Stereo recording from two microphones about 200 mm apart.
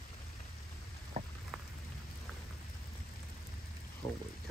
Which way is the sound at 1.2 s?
40° right (ahead or behind).